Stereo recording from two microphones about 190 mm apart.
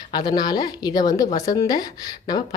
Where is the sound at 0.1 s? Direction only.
20° left (ahead or behind).